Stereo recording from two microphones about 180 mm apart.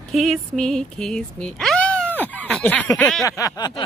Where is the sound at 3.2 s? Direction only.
20° left (ahead or behind).